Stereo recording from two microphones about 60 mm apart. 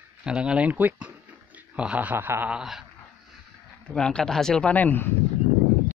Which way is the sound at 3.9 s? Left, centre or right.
Centre.